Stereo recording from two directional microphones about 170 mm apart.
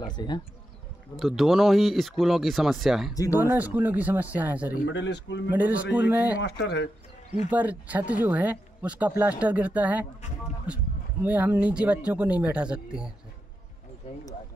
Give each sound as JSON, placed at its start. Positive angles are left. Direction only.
{"t": 0.0, "sound": "speech", "side_deg": 25}
{"t": 1.1, "sound": "speech", "side_deg": 0}
{"t": 4.9, "sound": "a man's voice", "side_deg": 90}
{"t": 5.5, "sound": "speech", "side_deg": -10}
{"t": 6.4, "sound": "speech", "side_deg": 80}
{"t": 7.4, "sound": "speech", "side_deg": -10}
{"t": 11.2, "sound": "speech", "side_deg": -10}